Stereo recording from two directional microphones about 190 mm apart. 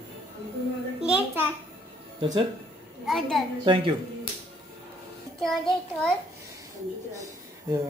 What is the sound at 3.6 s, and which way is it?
Speech, 25° right (ahead or behind).